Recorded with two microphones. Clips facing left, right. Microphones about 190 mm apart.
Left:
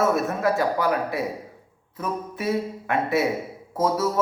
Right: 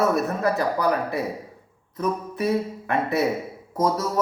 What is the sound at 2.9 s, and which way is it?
Speech, 5° left (ahead or behind).